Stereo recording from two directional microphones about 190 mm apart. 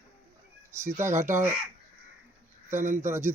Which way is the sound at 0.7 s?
15° right (ahead or behind).